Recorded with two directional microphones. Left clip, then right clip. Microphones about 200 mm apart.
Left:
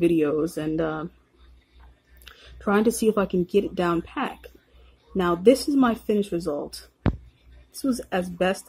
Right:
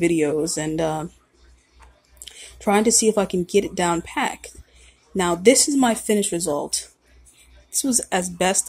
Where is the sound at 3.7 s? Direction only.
5° right (ahead or behind).